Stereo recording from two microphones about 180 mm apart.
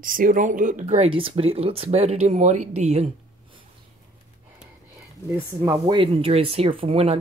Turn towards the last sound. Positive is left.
turn(degrees=-35)  # may be behind; listen again after turning